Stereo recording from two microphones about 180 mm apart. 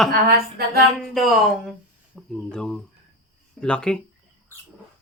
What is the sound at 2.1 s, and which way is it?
Speech, 5° left (ahead or behind).